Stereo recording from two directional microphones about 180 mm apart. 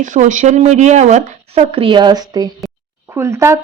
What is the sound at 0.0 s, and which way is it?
A woman's voice, 45° right (ahead or behind).